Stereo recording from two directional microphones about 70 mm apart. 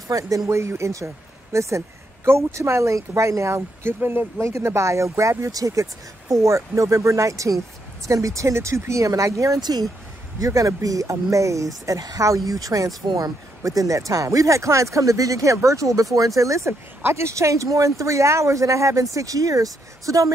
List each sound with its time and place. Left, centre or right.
0.1 s speech: right
0.5 s speech: right
4.4 s speech: right
9.6 s speech: right
10.4 s speech: right